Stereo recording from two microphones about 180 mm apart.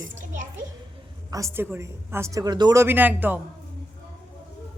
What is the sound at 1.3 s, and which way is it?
A woman's voice, 15° right (ahead or behind).